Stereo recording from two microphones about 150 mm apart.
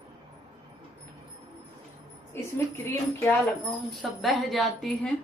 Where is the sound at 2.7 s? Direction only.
15° left (ahead or behind).